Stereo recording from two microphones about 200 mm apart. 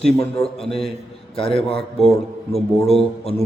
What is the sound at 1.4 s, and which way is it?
A man's voice, 30° left (ahead or behind).